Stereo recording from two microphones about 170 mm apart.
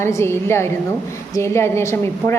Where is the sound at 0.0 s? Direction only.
15° left (ahead or behind).